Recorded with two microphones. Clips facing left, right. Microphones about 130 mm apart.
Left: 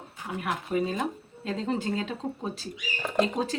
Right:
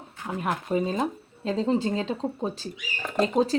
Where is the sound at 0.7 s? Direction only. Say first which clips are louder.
Right 2 dB; 30° right (ahead or behind).